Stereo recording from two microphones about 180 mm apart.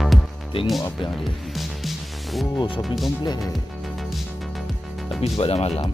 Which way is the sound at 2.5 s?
25° left (ahead or behind).